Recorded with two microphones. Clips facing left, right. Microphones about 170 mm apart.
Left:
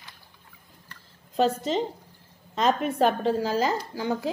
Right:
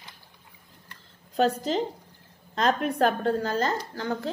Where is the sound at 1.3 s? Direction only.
Centre (ahead or behind).